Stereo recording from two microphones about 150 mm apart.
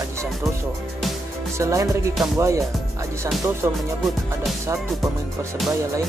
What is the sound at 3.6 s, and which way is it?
Music, 15° right (ahead or behind).